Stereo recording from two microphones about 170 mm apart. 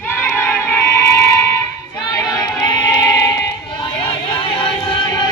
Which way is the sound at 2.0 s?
25° left (ahead or behind).